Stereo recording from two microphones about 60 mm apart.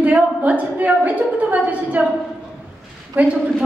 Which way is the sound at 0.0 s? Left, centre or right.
Right.